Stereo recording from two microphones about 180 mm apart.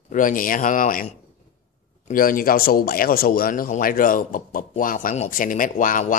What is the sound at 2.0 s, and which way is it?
Speech, 50° left (ahead or behind).